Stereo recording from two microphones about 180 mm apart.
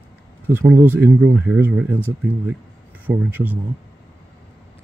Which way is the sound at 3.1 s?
20° right (ahead or behind).